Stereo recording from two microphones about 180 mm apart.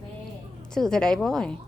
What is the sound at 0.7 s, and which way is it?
Speech, 5° left (ahead or behind).